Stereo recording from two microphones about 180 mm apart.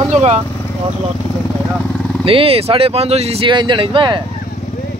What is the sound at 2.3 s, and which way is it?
Speech, 30° right (ahead or behind).